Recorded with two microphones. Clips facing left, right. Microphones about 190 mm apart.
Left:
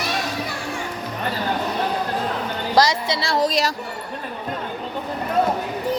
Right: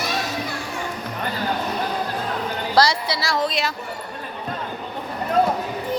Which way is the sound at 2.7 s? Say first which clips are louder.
Left 1 dB; 20° left (ahead or behind).